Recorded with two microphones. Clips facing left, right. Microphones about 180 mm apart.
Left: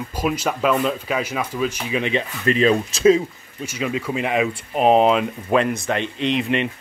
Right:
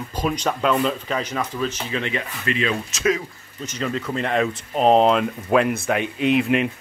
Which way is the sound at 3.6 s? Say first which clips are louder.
Left 1 dB; 10° left (ahead or behind).